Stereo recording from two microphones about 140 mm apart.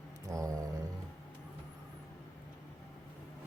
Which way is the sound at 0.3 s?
25° right (ahead or behind).